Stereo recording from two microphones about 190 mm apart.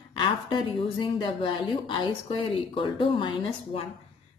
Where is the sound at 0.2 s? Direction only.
25° left (ahead or behind).